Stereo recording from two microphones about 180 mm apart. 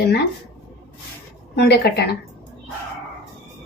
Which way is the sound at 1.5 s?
65° left (ahead or behind).